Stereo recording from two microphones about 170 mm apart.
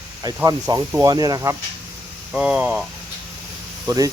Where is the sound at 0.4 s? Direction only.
20° right (ahead or behind).